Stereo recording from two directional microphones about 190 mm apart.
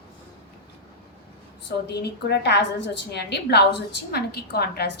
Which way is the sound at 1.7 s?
60° left (ahead or behind).